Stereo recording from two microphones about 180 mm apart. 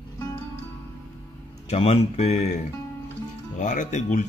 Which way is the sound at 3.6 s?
45° left (ahead or behind).